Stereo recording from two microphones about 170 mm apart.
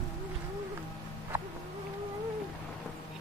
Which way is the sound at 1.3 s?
15° right (ahead or behind).